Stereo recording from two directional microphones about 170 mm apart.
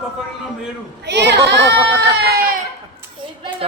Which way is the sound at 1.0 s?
85° right.